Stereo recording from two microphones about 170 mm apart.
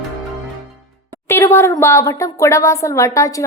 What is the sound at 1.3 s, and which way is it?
Speech, 15° left (ahead or behind).